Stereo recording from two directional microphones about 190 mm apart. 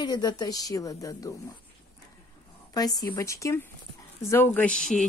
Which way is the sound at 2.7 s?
20° left (ahead or behind).